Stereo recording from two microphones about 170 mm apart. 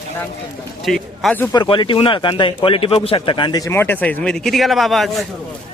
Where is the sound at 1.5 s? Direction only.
30° left (ahead or behind); by 5.3 s centre (ahead or behind).